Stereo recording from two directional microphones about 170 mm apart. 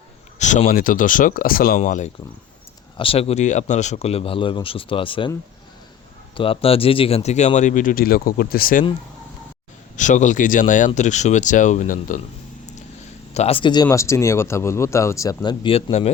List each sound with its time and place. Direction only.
0.3 s speech: 45° left (ahead or behind)
3.0 s speech: 35° left (ahead or behind)
6.3 s speech: 30° left (ahead or behind); by 8.8 s 60° left (ahead or behind)
9.9 s speech: 45° left (ahead or behind)
13.3 s speech: 35° left (ahead or behind)
13.8 s speech: 15° left (ahead or behind); by 16.1 s 40° left (ahead or behind)